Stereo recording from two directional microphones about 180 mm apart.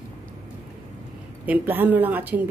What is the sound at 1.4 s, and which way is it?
Speech, 10° right (ahead or behind).